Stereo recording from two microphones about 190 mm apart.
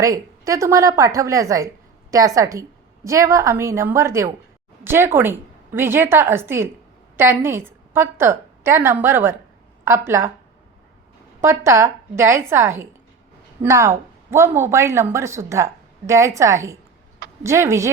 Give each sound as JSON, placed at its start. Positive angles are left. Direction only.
{"t": 0.0, "sound": "a woman's voice", "side_deg": -15}
{"t": 11.3, "sound": "speech", "side_deg": -15}